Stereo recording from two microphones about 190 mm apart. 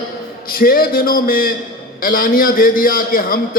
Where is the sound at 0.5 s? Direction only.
50° left (ahead or behind).